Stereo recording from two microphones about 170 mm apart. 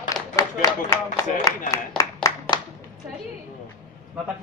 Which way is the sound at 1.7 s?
20° left (ahead or behind).